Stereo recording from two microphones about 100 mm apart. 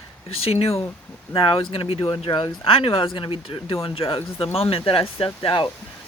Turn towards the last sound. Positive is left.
turn(degrees=65)  # may be behind; listen again after turning